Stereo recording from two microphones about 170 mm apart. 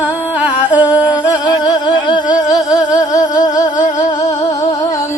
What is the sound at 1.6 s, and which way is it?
Music, 25° left (ahead or behind).